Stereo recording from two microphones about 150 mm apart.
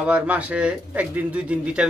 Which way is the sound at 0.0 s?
10° right (ahead or behind).